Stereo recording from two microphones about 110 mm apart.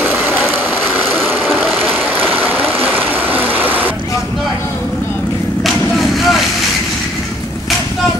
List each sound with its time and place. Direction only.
0.0 s vehicle: 20° right (ahead or behind)
1.2 s a sound: 5° left (ahead or behind)
2.8 s vehicle: 15° right (ahead or behind)
5.7 s vehicle: centre (ahead or behind)